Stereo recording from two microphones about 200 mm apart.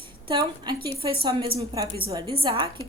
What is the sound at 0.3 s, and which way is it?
Speech, 20° right (ahead or behind).